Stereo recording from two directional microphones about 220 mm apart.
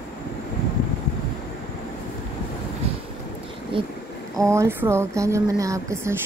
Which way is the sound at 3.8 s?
25° right (ahead or behind).